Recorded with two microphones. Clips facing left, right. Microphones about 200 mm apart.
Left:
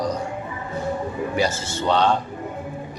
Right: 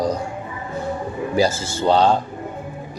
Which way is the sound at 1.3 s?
35° right (ahead or behind).